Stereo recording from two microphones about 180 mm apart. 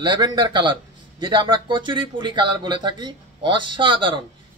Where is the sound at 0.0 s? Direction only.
25° right (ahead or behind).